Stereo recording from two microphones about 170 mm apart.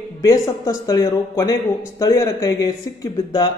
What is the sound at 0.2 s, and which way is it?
Speech, 20° left (ahead or behind).